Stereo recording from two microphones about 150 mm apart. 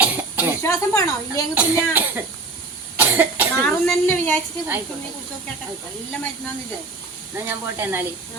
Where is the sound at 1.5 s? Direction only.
10° right (ahead or behind).